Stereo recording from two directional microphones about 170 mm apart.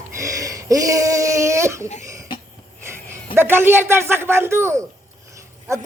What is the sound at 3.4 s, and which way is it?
A woman's voice, 15° right (ahead or behind).